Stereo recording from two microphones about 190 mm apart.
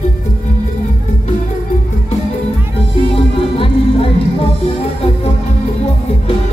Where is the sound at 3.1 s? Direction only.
30° left (ahead or behind).